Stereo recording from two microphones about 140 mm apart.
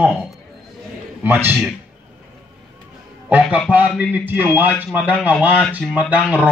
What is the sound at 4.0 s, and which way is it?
Speech, 15° right (ahead or behind).